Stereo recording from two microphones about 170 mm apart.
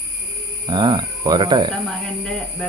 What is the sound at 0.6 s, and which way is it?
Speech, 25° right (ahead or behind).